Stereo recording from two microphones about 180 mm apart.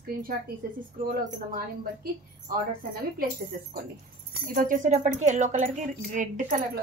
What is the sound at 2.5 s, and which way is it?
Speech, 55° right (ahead or behind).